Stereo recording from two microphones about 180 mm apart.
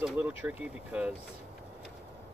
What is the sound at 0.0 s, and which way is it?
Speech, 10° right (ahead or behind).